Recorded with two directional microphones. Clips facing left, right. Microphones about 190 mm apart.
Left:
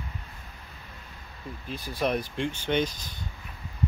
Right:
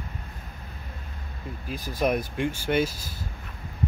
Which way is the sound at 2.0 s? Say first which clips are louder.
Right 3 dB; 10° right (ahead or behind).